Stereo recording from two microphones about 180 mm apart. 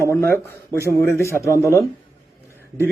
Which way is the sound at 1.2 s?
15° left (ahead or behind).